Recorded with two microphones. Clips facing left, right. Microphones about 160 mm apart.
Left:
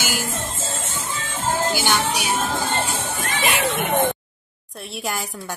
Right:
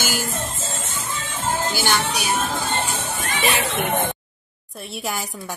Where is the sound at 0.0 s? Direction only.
10° left (ahead or behind).